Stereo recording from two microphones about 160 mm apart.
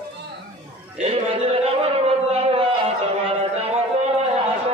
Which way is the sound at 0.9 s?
40° right (ahead or behind).